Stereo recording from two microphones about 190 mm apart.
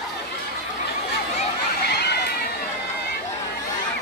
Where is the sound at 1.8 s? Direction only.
60° left (ahead or behind).